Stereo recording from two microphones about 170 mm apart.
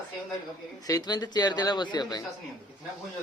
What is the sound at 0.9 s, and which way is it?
Speech, 20° left (ahead or behind).